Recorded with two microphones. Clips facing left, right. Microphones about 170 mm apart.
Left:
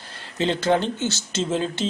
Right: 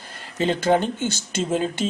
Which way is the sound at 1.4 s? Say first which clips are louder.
Right 1 dB; 10° right (ahead or behind).